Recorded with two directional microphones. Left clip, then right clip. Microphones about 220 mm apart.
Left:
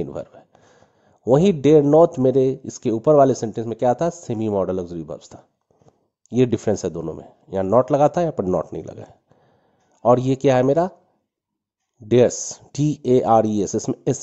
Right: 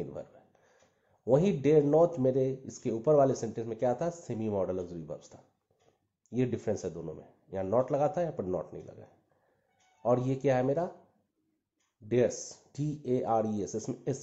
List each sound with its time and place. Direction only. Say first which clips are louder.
0.0 s a sound: left 12 dB; 45° left (ahead or behind)
1.2 s speech: left 11 dB; 50° left (ahead or behind)
12.1 s speech: left 12 dB; 50° left (ahead or behind)